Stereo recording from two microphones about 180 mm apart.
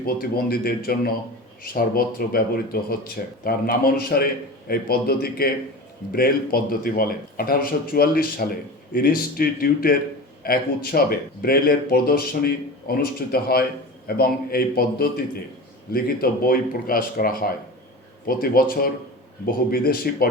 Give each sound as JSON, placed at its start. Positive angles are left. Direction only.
{"t": 0.0, "sound": "speech", "side_deg": 55}